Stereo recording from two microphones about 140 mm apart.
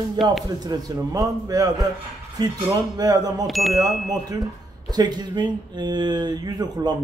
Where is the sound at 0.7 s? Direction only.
25° right (ahead or behind).